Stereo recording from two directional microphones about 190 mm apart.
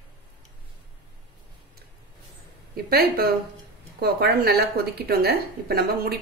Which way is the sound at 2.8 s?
55° right (ahead or behind).